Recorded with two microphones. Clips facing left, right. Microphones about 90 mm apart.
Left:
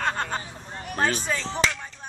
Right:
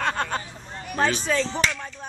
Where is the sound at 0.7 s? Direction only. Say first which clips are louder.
Right 2 dB; 10° left (ahead or behind).